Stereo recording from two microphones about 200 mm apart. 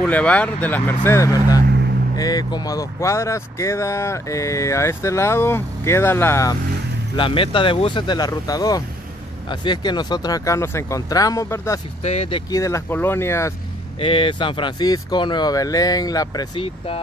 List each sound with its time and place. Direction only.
0.0 s speech: 5° left (ahead or behind)
7.2 s speech: 25° left (ahead or behind)
12.0 s speech: 30° left (ahead or behind); by 13.5 s 15° left (ahead or behind)
13.9 s speech: 25° left (ahead or behind)